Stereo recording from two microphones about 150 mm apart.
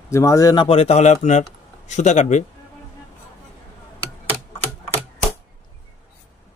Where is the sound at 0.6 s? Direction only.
45° left (ahead or behind).